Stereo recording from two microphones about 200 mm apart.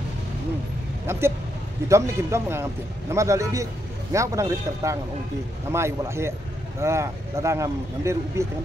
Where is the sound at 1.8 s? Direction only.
15° right (ahead or behind).